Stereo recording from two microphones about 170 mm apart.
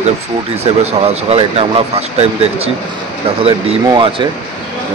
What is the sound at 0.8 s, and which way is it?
Speech, 35° right (ahead or behind).